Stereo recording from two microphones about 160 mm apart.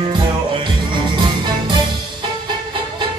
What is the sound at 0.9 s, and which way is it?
Music, 30° right (ahead or behind).